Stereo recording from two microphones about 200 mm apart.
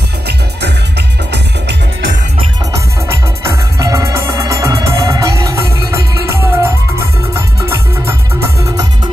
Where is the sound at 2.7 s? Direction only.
15° right (ahead or behind).